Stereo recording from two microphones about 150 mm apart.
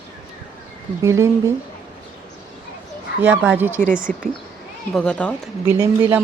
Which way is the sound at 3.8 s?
65° right (ahead or behind).